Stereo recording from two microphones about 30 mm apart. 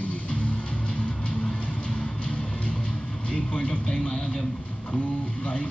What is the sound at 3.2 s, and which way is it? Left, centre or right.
Speech, left.